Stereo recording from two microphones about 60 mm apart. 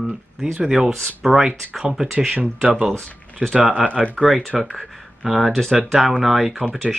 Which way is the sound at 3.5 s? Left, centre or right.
Right.